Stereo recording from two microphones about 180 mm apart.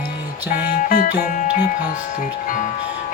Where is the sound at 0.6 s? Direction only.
45° left (ahead or behind).